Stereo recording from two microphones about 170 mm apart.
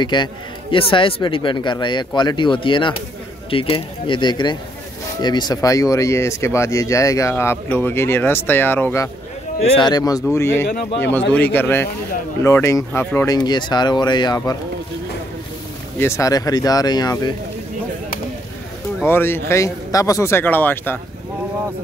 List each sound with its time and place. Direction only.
0.0 s speech: 25° left (ahead or behind)
9.6 s speech: 25° left (ahead or behind)
16.0 s speech: 15° left (ahead or behind)
19.0 s speech: 15° left (ahead or behind)